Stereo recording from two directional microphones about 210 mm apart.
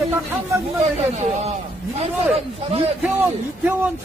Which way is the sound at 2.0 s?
30° right (ahead or behind).